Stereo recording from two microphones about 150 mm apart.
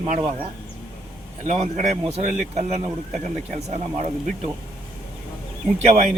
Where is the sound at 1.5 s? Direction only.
45° right (ahead or behind).